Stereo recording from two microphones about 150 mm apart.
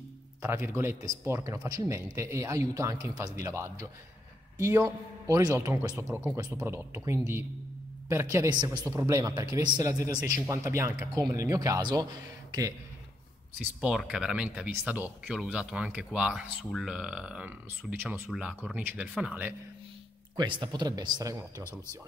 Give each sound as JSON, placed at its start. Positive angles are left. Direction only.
{"t": 0.4, "sound": "a man's voice", "side_deg": -15}
{"t": 13.7, "sound": "speech", "side_deg": -5}
{"t": 20.3, "sound": "a man's voice", "side_deg": -30}